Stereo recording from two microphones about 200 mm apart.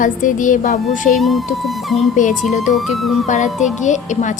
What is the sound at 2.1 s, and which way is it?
A woman's voice, 40° left (ahead or behind).